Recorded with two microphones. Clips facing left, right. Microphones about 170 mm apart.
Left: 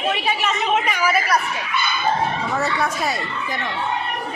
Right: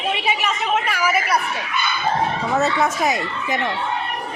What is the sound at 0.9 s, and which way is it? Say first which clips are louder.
Speech: even; 15° right (ahead or behind).